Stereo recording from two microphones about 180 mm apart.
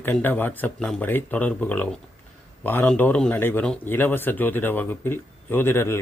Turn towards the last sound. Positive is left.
turn(degrees=15)  # may be behind; listen again after turning